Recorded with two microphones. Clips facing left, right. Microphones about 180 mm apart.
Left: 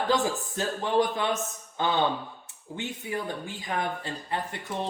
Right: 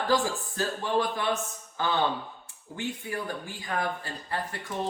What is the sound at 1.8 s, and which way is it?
Speech, 20° left (ahead or behind).